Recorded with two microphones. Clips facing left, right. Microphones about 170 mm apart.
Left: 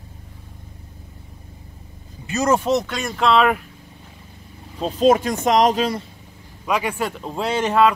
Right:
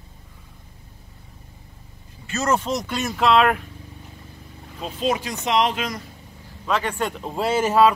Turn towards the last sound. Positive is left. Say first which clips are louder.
# even
turn(degrees=-5)  # may be behind; listen again after turning